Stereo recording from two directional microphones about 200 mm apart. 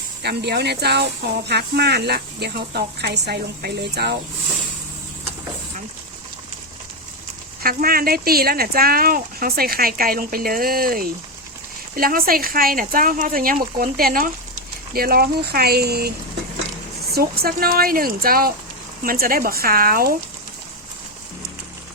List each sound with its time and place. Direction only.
0.2 s speech: 55° right (ahead or behind)
7.6 s speech: 45° right (ahead or behind)
17.2 s speech: 50° right (ahead or behind)